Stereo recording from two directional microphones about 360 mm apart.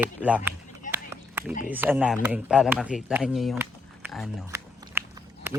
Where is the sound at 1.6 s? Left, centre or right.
Centre.